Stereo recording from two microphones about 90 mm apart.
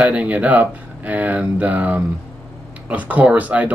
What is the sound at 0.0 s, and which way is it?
Speech, 15° right (ahead or behind).